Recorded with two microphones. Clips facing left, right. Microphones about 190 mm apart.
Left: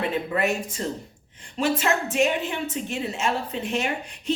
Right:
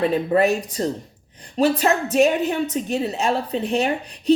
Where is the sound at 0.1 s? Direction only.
35° right (ahead or behind).